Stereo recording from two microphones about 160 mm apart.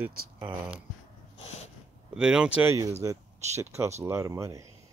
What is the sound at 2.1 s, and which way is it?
Speech, 5° right (ahead or behind).